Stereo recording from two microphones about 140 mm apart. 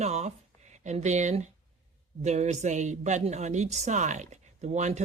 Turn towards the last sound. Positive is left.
turn(degrees=-55)  # may be behind; listen again after turning